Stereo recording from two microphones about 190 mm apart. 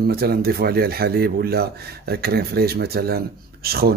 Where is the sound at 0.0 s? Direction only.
55° right (ahead or behind).